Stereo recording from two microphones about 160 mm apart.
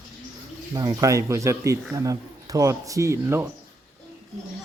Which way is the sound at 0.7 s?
25° right (ahead or behind).